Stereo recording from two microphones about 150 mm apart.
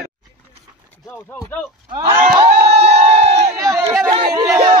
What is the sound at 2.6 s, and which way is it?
Crowd, 45° right (ahead or behind).